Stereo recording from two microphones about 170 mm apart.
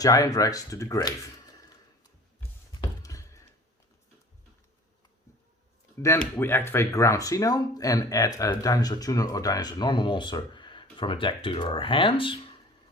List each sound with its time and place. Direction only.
0.0 s speech: 20° left (ahead or behind)
2.8 s a sound: 20° left (ahead or behind)
6.0 s speech: 15° left (ahead or behind); by 12.4 s 30° left (ahead or behind)